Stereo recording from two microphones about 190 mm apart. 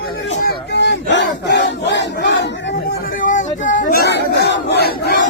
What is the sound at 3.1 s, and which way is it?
Battle cry, 45° left (ahead or behind).